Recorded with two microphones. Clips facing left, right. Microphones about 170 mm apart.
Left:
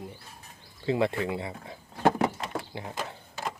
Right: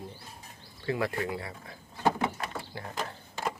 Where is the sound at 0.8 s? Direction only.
25° left (ahead or behind).